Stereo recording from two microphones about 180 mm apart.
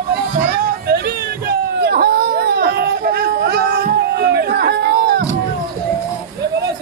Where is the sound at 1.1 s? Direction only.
60° right (ahead or behind).